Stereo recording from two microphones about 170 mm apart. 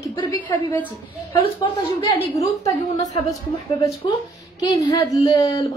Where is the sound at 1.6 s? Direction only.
30° left (ahead or behind).